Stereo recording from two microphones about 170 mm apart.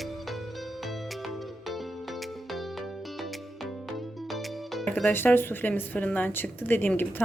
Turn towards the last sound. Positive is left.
turn(degrees=10)  # may be behind; listen again after turning